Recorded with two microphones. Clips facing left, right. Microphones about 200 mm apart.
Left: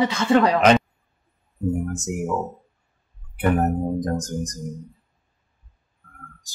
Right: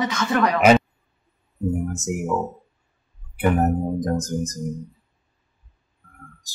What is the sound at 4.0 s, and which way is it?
Speech, 5° right (ahead or behind).